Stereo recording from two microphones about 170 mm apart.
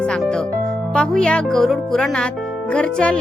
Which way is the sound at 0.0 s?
5° left (ahead or behind).